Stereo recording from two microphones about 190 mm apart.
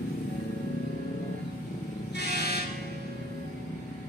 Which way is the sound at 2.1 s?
55° left (ahead or behind).